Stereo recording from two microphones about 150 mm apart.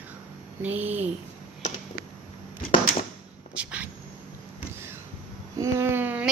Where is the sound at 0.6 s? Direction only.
10° right (ahead or behind).